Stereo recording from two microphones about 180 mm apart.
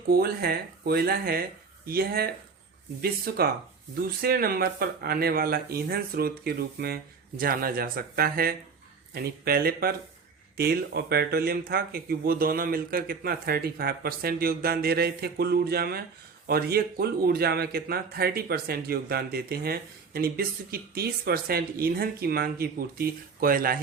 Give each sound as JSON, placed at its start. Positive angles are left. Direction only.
{"t": 0.1, "sound": "a man's voice", "side_deg": -60}